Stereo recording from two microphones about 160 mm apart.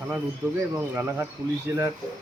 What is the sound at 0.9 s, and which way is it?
Speech, 15° right (ahead or behind).